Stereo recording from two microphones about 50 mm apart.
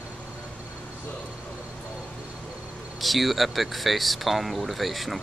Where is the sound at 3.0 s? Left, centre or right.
Centre.